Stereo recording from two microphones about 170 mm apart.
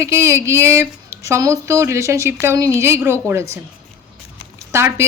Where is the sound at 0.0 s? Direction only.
15° right (ahead or behind).